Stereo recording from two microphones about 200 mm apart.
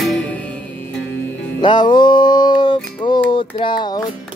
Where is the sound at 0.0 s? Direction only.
5° left (ahead or behind).